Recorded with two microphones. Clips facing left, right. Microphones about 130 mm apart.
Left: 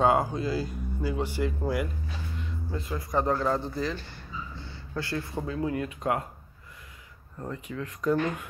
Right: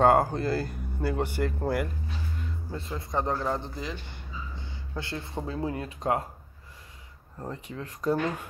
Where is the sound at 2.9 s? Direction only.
20° right (ahead or behind).